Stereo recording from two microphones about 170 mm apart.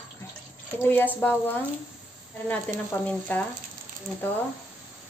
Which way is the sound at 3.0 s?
10° left (ahead or behind).